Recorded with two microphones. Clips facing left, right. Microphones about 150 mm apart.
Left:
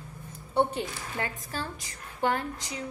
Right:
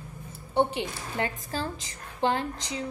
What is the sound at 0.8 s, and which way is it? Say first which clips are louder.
A woman's voice: right 3 dB; 30° right (ahead or behind).